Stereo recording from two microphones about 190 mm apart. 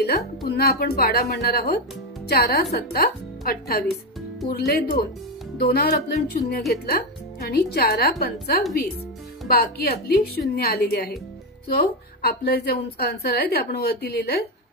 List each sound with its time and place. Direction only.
0.0 s a woman's voice: 60° left (ahead or behind)
3.8 s music: centre (ahead or behind)
4.5 s a woman's voice: 55° left (ahead or behind)